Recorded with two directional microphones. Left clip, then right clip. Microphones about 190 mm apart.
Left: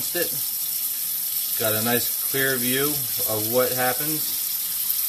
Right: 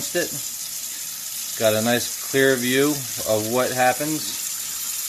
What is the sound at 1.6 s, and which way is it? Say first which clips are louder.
Speech: right 5 dB; 35° right (ahead or behind).